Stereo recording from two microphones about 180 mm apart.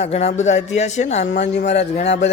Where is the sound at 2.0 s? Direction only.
70° left (ahead or behind).